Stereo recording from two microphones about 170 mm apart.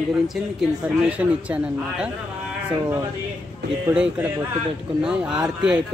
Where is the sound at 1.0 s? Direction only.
5° right (ahead or behind).